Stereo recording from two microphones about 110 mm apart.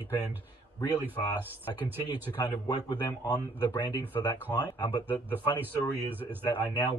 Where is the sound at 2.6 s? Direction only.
40° left (ahead or behind).